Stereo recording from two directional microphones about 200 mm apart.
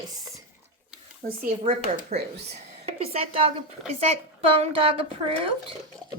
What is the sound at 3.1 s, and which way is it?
A woman's voice, 30° right (ahead or behind).